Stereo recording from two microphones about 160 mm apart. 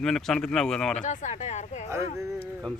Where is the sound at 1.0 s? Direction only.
50° left (ahead or behind).